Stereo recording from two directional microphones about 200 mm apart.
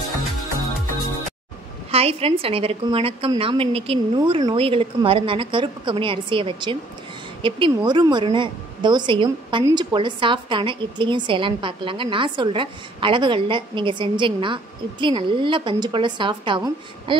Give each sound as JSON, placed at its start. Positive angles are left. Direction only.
{"t": 1.9, "sound": "a woman's voice", "side_deg": -30}